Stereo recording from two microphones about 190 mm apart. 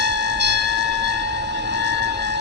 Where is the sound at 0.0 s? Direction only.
65° right (ahead or behind).